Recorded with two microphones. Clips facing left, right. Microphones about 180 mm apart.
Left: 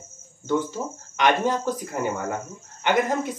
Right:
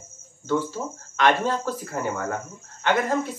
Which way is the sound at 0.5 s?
15° left (ahead or behind).